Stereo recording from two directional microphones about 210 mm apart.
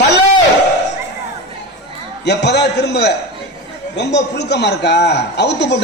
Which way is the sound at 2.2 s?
55° left (ahead or behind).